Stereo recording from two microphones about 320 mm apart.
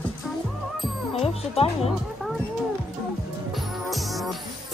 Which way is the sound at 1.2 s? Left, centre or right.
Centre.